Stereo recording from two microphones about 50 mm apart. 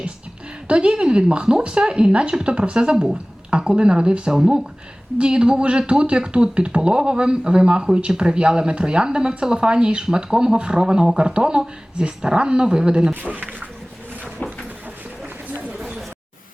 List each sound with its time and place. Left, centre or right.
0.7 s a woman's voice: centre
13.1 s speech: right